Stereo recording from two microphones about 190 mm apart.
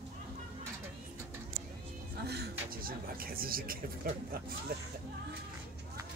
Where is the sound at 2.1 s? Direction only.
60° right (ahead or behind).